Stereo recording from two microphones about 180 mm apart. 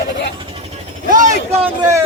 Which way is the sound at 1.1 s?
45° right (ahead or behind).